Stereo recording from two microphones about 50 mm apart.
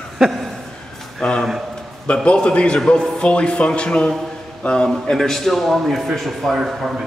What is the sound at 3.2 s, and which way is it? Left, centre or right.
A man's voice, left.